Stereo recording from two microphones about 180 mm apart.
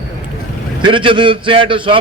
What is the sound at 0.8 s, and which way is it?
A man's voice, 25° right (ahead or behind).